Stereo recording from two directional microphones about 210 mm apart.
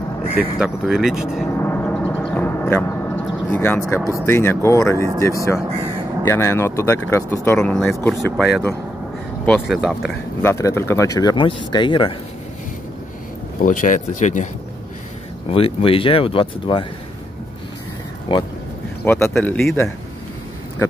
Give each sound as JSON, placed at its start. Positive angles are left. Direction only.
{"t": 0.3, "sound": "speech", "side_deg": -5}
{"t": 1.6, "sound": "a sound", "side_deg": 10}
{"t": 4.3, "sound": "speech", "side_deg": 10}
{"t": 10.4, "sound": "speech", "side_deg": 10}
{"t": 13.6, "sound": "speech", "side_deg": 40}
{"t": 15.5, "sound": "speech", "side_deg": 25}
{"t": 18.3, "sound": "speech", "side_deg": 20}
{"t": 19.0, "sound": "speech", "side_deg": 10}